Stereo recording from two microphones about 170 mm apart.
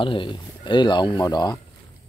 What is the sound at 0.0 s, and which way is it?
Speech, 30° left (ahead or behind).